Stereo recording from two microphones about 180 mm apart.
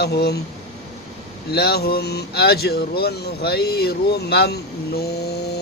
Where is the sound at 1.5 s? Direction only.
60° left (ahead or behind).